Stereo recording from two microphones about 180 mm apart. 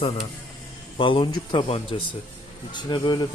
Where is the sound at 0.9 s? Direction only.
30° left (ahead or behind).